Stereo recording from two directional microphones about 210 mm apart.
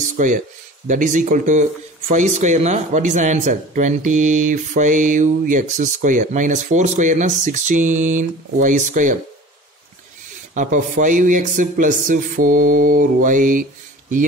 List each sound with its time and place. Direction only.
0.8 s speech: 35° right (ahead or behind)
10.5 s speech: 35° right (ahead or behind)